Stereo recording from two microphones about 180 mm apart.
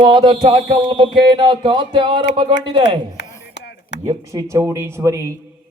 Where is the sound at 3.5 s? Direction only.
65° left (ahead or behind).